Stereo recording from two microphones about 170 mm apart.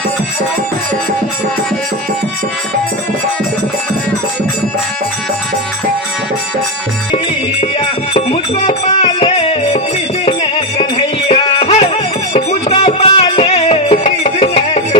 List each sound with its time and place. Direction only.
7.6 s music: 35° left (ahead or behind)